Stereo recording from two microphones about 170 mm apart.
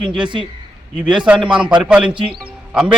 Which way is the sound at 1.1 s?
5° right (ahead or behind).